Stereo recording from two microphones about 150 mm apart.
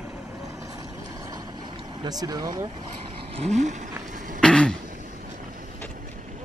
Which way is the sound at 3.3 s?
50° right (ahead or behind).